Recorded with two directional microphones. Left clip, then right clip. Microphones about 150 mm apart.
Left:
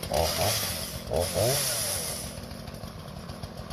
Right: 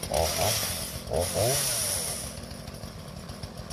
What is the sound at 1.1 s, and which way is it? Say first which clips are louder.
Speech: even; 25° left (ahead or behind).